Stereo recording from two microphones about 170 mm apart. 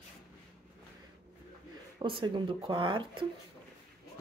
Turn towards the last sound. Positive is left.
turn(degrees=-30)  # may be behind; listen again after turning